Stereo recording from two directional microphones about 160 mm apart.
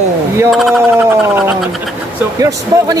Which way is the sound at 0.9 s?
15° right (ahead or behind).